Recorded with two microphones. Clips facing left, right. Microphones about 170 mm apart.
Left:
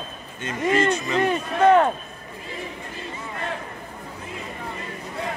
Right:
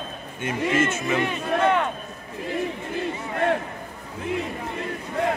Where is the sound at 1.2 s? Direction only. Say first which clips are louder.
Left 5 dB; 40° left (ahead or behind).